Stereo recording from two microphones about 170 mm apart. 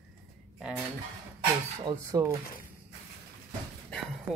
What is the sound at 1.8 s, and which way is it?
Speech, 20° right (ahead or behind).